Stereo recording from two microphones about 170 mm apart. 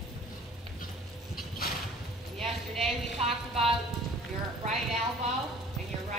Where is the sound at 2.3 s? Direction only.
Centre (ahead or behind).